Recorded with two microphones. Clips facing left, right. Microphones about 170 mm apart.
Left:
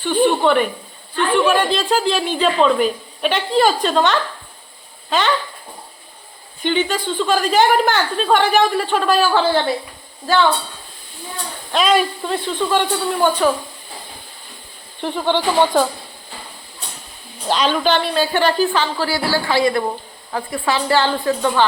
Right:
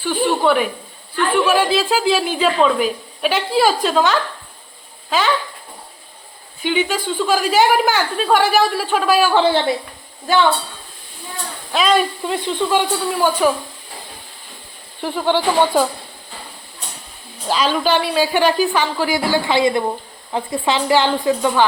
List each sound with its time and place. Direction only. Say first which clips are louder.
0.0 s a sound: left 2 dB; 5° right (ahead or behind)
1.5 s a woman's voice: right 1 dB; 5° right (ahead or behind)
6.6 s a woman's voice: even; 10° right (ahead or behind)
9.3 s a woman's voice: right 1 dB; 20° right (ahead or behind)
11.7 s a woman's voice: even; centre (ahead or behind)
12.3 s a woman's voice: right 1 dB; 15° right (ahead or behind)
13.1 s a woman's voice: even; 5° right (ahead or behind)
15.0 s a woman's voice: right 1 dB; 10° right (ahead or behind)
17.5 s a woman's voice: even; 5° right (ahead or behind)